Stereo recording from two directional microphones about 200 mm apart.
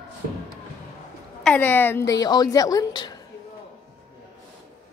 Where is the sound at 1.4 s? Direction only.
10° left (ahead or behind).